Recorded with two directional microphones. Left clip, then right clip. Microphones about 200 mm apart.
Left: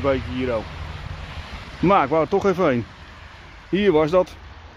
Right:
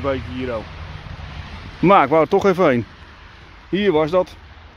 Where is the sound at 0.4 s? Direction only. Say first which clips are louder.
Left 1 dB; 5° left (ahead or behind).